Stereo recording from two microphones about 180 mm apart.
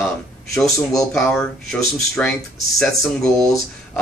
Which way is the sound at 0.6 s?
Centre (ahead or behind).